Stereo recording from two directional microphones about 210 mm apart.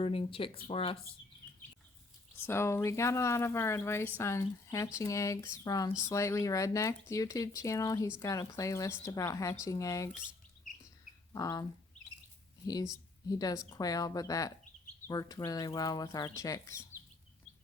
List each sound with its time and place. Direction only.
0.0 s speech: 25° left (ahead or behind)
2.5 s speech: 10° left (ahead or behind)
11.3 s speech: 15° left (ahead or behind)
13.2 s speech: 15° left (ahead or behind)